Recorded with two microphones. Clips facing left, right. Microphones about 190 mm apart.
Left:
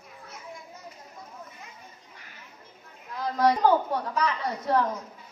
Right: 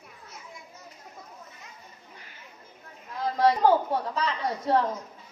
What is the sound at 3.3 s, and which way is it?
A woman's voice, 25° right (ahead or behind).